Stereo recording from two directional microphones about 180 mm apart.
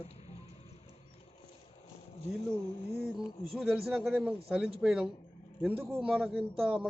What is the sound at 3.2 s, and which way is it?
A man's voice, centre (ahead or behind).